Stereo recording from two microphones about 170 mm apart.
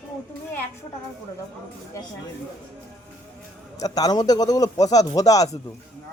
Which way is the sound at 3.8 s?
20° left (ahead or behind).